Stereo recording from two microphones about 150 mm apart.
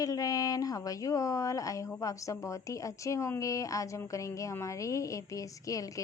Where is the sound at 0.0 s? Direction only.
25° left (ahead or behind).